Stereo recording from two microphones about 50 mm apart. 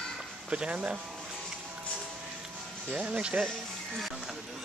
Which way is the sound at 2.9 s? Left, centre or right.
Right.